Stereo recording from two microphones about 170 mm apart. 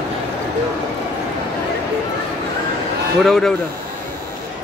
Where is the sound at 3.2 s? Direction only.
5° left (ahead or behind).